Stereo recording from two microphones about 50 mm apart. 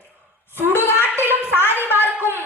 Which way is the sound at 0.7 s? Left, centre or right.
Left.